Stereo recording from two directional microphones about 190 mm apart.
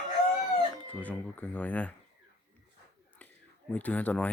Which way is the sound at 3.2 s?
5° left (ahead or behind).